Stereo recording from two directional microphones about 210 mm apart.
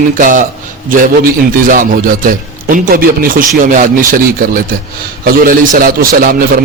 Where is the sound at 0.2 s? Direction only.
40° right (ahead or behind).